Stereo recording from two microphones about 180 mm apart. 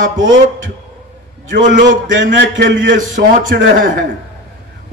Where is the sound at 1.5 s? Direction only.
45° right (ahead or behind).